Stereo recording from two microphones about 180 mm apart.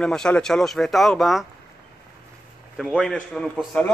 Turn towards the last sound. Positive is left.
turn(degrees=5)  # may be behind; listen again after turning